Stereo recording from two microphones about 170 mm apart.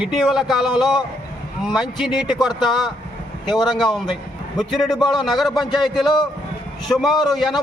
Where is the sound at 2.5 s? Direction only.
25° left (ahead or behind).